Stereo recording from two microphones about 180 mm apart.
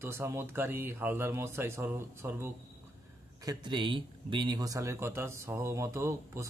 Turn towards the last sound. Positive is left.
turn(degrees=-15)  # may be behind; listen again after turning